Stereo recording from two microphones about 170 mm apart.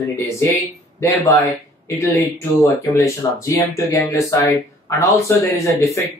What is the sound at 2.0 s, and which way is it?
Speech, 20° left (ahead or behind).